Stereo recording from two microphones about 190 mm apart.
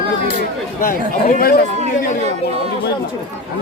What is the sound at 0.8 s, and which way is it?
Speech, 45° left (ahead or behind).